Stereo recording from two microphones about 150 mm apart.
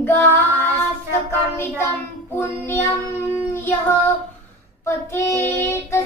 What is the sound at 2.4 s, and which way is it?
Child singing, 15° left (ahead or behind).